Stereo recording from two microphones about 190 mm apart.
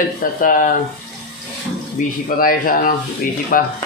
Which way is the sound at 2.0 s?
45° left (ahead or behind).